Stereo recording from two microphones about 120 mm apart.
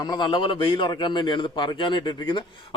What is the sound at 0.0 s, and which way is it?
A man's voice, 40° left (ahead or behind).